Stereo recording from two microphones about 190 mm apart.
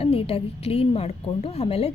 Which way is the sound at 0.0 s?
30° left (ahead or behind).